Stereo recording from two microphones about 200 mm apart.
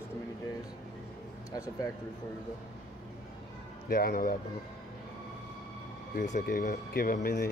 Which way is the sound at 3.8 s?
45° left (ahead or behind).